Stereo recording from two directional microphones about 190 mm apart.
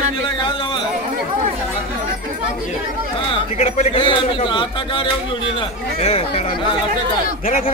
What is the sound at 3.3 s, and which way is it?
A man's voice, 35° left (ahead or behind).